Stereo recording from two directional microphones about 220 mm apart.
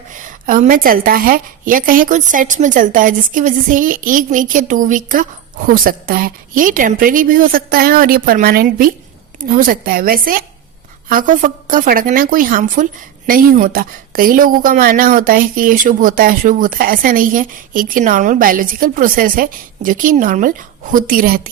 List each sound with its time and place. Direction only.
0.3 s a woman's voice: 35° right (ahead or behind)